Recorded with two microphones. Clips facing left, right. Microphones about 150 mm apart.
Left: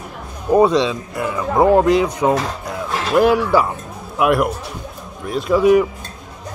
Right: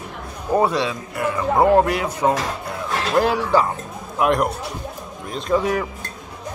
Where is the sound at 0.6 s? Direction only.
20° left (ahead or behind).